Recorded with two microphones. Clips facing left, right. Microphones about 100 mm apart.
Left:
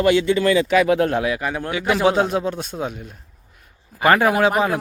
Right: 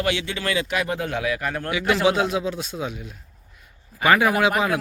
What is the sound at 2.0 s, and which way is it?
A man's voice, 45° left (ahead or behind).